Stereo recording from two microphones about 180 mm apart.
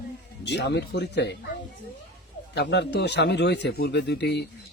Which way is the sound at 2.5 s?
70° left (ahead or behind).